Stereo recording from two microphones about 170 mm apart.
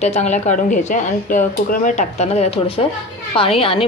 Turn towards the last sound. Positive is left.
turn(degrees=35)  # may be behind; listen again after turning